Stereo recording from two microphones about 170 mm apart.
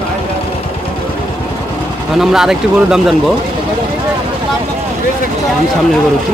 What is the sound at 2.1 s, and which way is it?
Speech, 5° right (ahead or behind).